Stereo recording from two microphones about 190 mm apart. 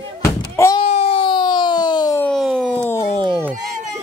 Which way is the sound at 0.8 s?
35° left (ahead or behind).